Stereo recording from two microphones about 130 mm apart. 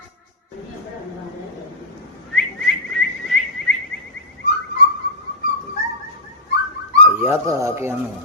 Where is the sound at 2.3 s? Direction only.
Centre (ahead or behind).